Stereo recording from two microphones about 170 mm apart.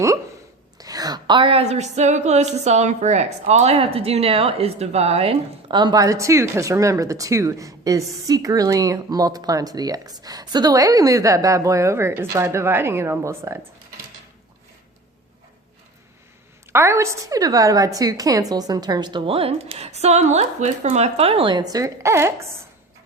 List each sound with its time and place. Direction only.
0.8 s a woman's voice: 20° right (ahead or behind)
16.7 s a woman's voice: 15° right (ahead or behind)